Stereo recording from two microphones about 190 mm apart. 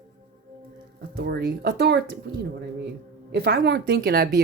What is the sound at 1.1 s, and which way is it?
Speech, 60° right (ahead or behind).